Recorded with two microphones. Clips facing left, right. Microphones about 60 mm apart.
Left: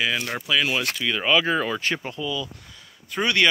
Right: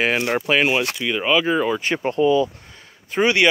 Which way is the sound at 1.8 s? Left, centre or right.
Right.